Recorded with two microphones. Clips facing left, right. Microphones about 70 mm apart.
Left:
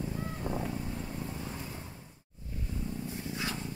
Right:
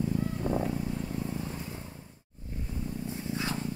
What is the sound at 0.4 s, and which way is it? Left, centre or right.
Wild animals, centre.